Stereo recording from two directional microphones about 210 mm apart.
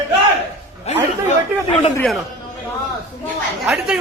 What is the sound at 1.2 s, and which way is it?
Speech, 30° left (ahead or behind).